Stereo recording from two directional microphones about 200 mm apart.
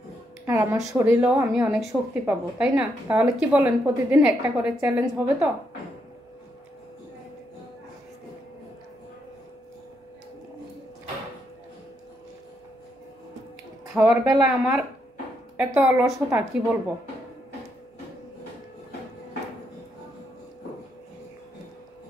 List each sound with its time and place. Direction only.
0.5 s a woman's voice: 10° right (ahead or behind)
13.9 s a woman's voice: 10° right (ahead or behind)